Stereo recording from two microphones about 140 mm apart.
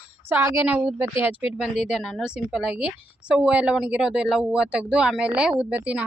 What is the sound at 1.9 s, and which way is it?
Speech, centre (ahead or behind).